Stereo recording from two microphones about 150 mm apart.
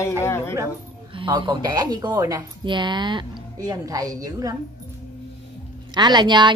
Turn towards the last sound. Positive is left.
turn(degrees=-30)  # may be behind; listen again after turning